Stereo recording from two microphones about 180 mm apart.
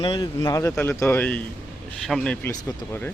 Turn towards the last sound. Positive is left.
turn(degrees=10)  # may be behind; listen again after turning